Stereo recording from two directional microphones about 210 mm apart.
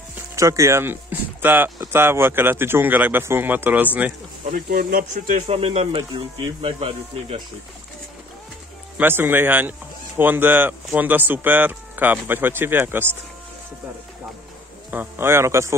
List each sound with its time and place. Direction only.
0.4 s speech: 15° right (ahead or behind)
4.6 s speech: 45° right (ahead or behind)
5.5 s speech: 25° right (ahead or behind)
8.9 s speech: 10° right (ahead or behind)
14.9 s speech: 10° right (ahead or behind)